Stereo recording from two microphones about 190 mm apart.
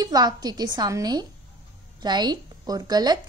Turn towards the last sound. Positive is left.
turn(degrees=-20)  # may be behind; listen again after turning